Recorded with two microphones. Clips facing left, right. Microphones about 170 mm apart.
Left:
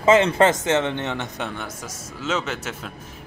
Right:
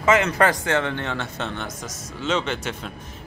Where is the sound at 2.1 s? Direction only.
5° left (ahead or behind).